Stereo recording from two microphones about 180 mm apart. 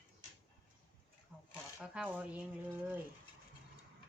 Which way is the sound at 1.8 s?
5° right (ahead or behind).